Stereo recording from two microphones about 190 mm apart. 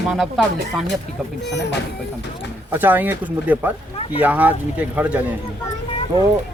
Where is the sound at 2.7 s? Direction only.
10° right (ahead or behind).